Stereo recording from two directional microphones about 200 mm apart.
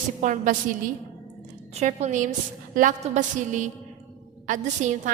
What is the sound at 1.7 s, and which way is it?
A woman's voice, 35° right (ahead or behind).